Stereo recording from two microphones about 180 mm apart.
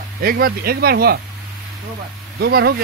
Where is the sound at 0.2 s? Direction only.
55° right (ahead or behind).